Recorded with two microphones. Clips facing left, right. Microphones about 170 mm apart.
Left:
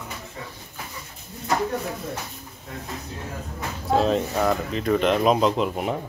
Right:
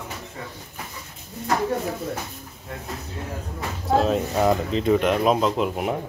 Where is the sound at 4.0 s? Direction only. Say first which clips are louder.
Even; 5° right (ahead or behind).